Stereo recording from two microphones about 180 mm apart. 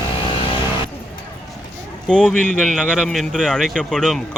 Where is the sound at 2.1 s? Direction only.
5° left (ahead or behind).